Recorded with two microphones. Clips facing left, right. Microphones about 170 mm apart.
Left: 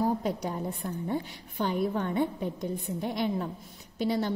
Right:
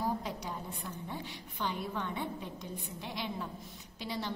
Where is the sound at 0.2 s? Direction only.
50° left (ahead or behind).